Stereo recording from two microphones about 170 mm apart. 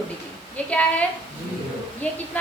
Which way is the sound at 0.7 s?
10° left (ahead or behind).